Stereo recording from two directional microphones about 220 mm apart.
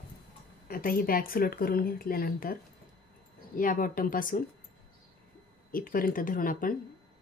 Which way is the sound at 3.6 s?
40° left (ahead or behind).